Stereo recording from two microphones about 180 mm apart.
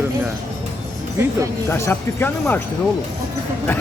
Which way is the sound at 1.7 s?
15° left (ahead or behind).